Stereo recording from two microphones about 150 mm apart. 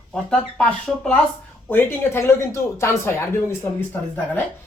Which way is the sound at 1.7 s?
15° left (ahead or behind).